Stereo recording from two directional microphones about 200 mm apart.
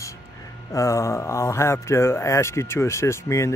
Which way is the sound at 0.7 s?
15° left (ahead or behind).